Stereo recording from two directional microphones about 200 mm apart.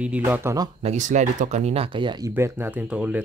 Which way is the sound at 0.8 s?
35° right (ahead or behind).